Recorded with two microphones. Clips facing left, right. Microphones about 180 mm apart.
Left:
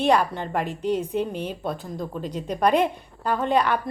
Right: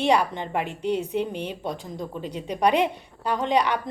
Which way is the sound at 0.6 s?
65° right (ahead or behind).